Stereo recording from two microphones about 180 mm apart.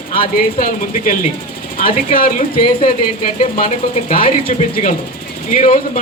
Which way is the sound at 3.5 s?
45° left (ahead or behind).